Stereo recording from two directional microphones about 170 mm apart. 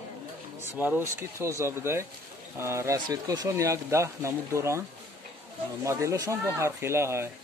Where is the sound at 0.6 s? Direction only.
10° right (ahead or behind).